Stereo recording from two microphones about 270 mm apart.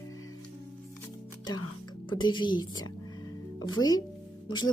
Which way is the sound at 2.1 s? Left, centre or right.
Centre.